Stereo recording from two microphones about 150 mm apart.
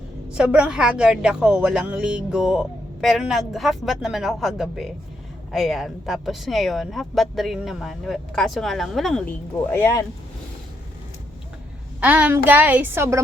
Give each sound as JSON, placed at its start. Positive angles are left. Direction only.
{"t": 0.3, "sound": "a woman's voice", "side_deg": -5}
{"t": 9.7, "sound": "speech", "side_deg": 20}
{"t": 11.9, "sound": "a child's voice", "side_deg": -10}